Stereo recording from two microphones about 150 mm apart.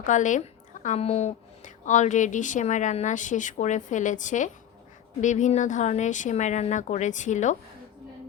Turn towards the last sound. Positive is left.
turn(degrees=55)  # may be behind; listen again after turning